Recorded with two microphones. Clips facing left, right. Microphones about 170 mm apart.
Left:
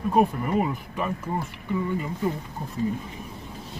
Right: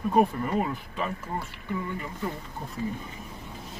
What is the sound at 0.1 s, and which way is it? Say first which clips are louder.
Speech: left 2 dB; 10° left (ahead or behind).